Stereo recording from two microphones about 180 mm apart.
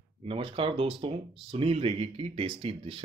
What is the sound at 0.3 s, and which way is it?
Speech, 30° right (ahead or behind).